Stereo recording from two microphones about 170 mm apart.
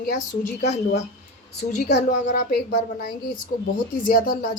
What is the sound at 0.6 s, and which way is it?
Speech, 40° left (ahead or behind).